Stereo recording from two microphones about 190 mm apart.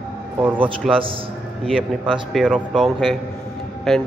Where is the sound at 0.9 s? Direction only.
30° right (ahead or behind).